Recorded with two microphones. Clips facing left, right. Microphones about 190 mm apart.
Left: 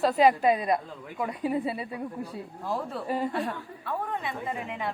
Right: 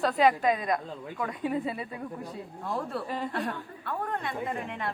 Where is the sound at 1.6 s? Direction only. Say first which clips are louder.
Left 2 dB; 30° left (ahead or behind).